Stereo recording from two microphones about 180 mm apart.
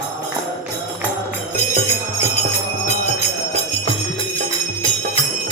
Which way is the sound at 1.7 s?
40° left (ahead or behind).